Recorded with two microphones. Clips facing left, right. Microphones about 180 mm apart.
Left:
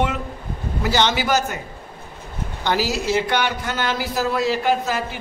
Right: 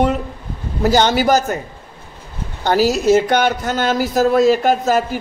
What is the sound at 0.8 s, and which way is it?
Speech, 45° right (ahead or behind).